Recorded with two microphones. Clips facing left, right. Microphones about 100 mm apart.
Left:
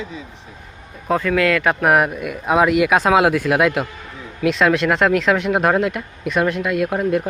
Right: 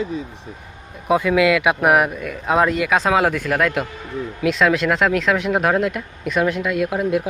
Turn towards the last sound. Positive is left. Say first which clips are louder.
# left 1 dB
turn(degrees=-5)  # may be behind; listen again after turning